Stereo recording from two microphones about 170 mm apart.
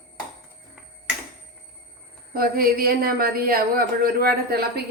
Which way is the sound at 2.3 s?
60° right (ahead or behind).